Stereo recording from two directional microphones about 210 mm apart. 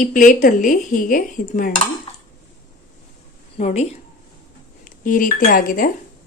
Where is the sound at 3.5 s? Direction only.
30° left (ahead or behind).